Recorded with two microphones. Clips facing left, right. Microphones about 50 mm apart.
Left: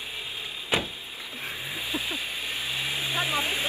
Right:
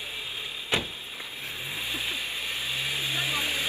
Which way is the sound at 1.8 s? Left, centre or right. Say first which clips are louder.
Left 1 dB; centre.